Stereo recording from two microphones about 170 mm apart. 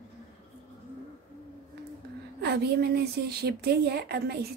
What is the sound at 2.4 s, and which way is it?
A woman's voice, 70° right (ahead or behind).